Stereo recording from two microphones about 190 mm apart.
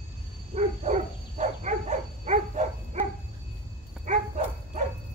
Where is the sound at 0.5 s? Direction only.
35° right (ahead or behind).